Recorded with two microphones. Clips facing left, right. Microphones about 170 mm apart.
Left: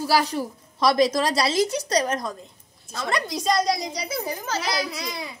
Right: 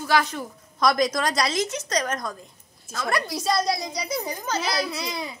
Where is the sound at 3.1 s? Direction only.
20° left (ahead or behind).